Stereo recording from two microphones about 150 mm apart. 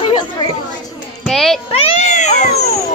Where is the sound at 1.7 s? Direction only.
45° left (ahead or behind).